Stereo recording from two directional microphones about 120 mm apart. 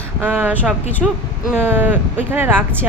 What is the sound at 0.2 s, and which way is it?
Speech, 15° right (ahead or behind).